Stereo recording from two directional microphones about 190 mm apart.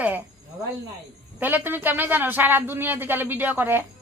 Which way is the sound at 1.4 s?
10° right (ahead or behind).